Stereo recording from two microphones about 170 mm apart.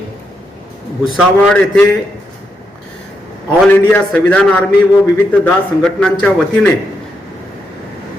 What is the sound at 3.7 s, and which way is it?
A man's voice, 10° left (ahead or behind).